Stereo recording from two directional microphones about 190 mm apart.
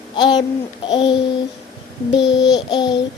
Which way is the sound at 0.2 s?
20° left (ahead or behind).